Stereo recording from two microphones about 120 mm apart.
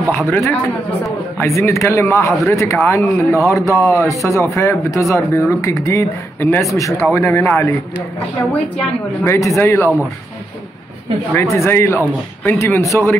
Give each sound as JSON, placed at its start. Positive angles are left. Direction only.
{"t": 0.3, "sound": "speech", "side_deg": 15}
{"t": 9.2, "sound": "speech", "side_deg": 25}
{"t": 11.3, "sound": "speech", "side_deg": 20}